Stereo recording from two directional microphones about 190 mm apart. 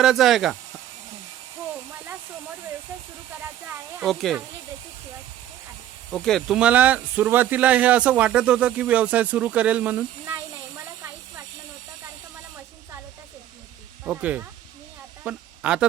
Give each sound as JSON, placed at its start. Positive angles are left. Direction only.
{"t": 0.0, "sound": "speech", "side_deg": 0}
{"t": 4.0, "sound": "speech", "side_deg": 0}
{"t": 6.1, "sound": "speech", "side_deg": 0}
{"t": 14.0, "sound": "speech", "side_deg": -5}
{"t": 15.2, "sound": "a sound", "side_deg": -5}